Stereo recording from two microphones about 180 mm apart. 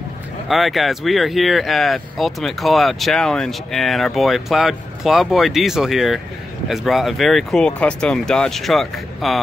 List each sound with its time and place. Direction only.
0.5 s speech: centre (ahead or behind)